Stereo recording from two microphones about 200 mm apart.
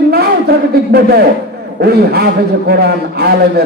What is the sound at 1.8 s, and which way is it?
A man's voice, 55° right (ahead or behind).